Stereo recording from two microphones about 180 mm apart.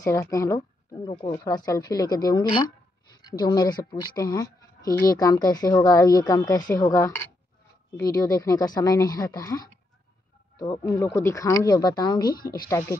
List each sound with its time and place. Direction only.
0.0 s speech: 15° left (ahead or behind)
12.3 s speech: 55° left (ahead or behind)
12.6 s speech: 15° left (ahead or behind)